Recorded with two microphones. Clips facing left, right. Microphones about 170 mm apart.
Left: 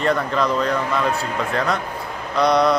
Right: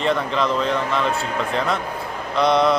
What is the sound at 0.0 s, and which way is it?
A man's voice, centre (ahead or behind).